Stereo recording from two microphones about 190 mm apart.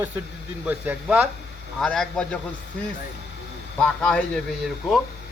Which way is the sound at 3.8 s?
5° left (ahead or behind).